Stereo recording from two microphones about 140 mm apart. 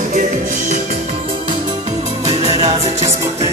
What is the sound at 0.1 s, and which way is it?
Music, 60° right (ahead or behind).